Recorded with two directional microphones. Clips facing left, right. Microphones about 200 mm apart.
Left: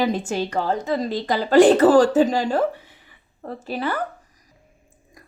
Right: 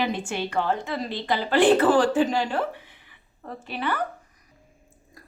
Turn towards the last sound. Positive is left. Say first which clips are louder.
# left 3 dB
turn(degrees=40)  # may be behind; listen again after turning